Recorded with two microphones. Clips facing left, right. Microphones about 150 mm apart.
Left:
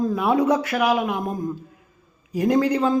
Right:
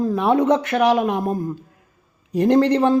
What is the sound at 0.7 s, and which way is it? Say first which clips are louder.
Speech: right 4 dB; 30° right (ahead or behind).